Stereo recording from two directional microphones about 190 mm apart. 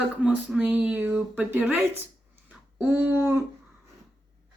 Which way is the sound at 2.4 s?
10° right (ahead or behind).